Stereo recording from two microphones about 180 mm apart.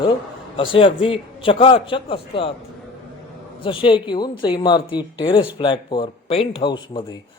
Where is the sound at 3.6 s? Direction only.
30° left (ahead or behind).